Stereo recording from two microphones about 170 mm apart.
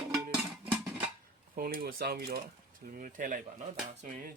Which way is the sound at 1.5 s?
60° right (ahead or behind).